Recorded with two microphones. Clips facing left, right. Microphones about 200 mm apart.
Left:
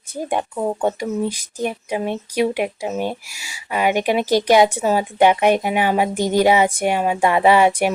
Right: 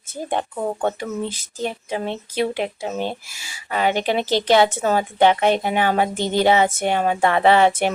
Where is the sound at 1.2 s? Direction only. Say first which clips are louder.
Left 3 dB; 15° left (ahead or behind).